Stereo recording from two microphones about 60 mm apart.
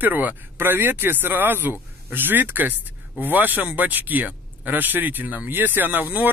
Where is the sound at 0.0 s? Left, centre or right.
Right.